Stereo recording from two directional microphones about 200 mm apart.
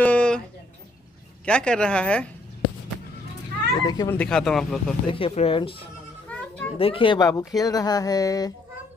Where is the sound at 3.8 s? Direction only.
20° left (ahead or behind).